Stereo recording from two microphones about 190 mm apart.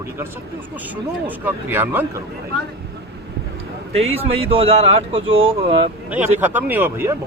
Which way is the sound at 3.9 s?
30° right (ahead or behind).